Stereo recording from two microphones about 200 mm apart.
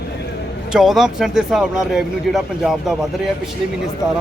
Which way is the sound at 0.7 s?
Centre (ahead or behind).